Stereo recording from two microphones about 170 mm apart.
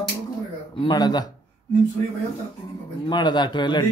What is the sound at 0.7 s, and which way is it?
Speech, 25° left (ahead or behind).